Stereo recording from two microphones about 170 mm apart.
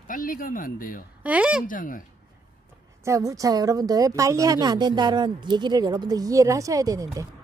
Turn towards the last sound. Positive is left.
turn(degrees=-20)  # may be behind; listen again after turning